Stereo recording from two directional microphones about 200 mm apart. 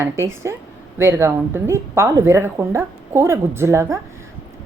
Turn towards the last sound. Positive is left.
turn(degrees=-15)  # may be behind; listen again after turning